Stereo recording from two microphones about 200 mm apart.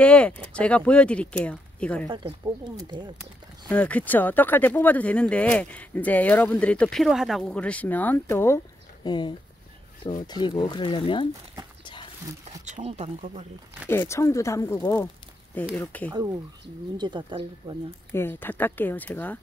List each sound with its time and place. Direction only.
0.0 s speech: 5° left (ahead or behind)
2.0 s speech: 25° right (ahead or behind)
3.6 s speech: 5° left (ahead or behind); by 11.2 s 25° left (ahead or behind)
11.8 s a sound: 25° left (ahead or behind)
12.6 s speech: 35° right (ahead or behind)
13.8 s speech: 10° left (ahead or behind)
16.9 s speech: 20° right (ahead or behind)
18.1 s speech: 10° left (ahead or behind)